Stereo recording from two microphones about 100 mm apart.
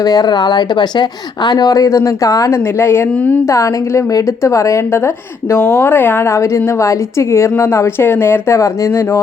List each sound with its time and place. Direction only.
0.0 s a woman's voice: 40° left (ahead or behind)